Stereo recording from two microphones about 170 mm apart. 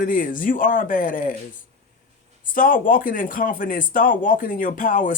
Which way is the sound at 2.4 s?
55° left (ahead or behind).